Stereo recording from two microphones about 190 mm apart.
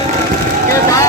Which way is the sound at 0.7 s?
15° left (ahead or behind).